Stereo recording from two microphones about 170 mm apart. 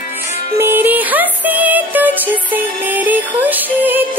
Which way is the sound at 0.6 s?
10° right (ahead or behind).